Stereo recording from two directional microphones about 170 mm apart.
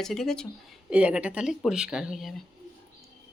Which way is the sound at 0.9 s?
5° right (ahead or behind).